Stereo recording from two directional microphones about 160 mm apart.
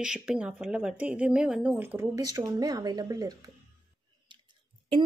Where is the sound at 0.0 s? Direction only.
5° right (ahead or behind); by 3.5 s 25° right (ahead or behind).